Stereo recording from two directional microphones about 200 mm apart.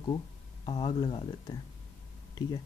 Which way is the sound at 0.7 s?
25° left (ahead or behind).